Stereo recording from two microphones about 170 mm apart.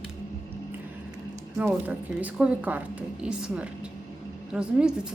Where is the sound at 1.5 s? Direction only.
10° right (ahead or behind).